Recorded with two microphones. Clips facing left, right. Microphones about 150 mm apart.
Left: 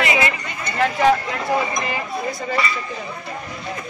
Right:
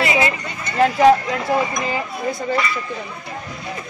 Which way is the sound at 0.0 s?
35° right (ahead or behind).